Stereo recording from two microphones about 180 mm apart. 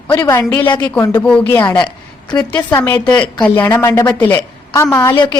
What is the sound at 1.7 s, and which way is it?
A woman's voice, 25° left (ahead or behind).